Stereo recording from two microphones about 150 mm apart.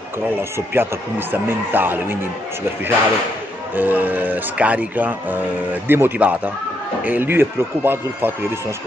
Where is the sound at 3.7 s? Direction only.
10° right (ahead or behind).